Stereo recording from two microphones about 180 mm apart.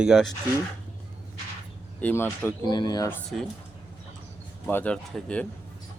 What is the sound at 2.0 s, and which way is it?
Speech, 10° left (ahead or behind).